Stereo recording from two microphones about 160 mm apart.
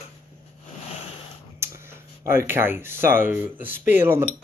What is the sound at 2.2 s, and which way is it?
Speech, 15° right (ahead or behind).